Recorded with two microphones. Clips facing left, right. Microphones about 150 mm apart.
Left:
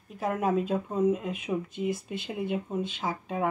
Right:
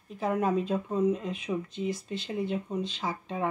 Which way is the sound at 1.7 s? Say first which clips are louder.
Left 1 dB; 50° left (ahead or behind).